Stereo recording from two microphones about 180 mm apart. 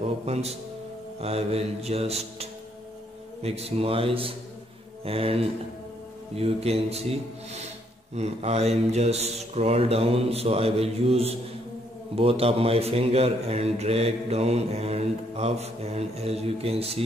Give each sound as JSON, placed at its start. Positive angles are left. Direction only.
{"t": 0.0, "sound": "a man's voice", "side_deg": -35}
{"t": 3.4, "sound": "a man's voice", "side_deg": -35}